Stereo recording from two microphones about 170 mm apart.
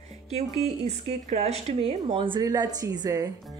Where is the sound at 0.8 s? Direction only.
40° right (ahead or behind); by 3.3 s 20° right (ahead or behind).